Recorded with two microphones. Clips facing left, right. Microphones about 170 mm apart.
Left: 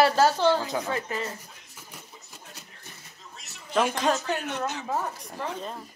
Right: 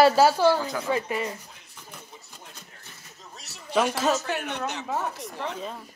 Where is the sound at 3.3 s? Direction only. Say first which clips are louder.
Right 3 dB; 35° right (ahead or behind).